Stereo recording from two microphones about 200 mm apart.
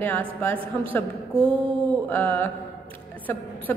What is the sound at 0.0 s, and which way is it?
A woman's voice, 10° left (ahead or behind).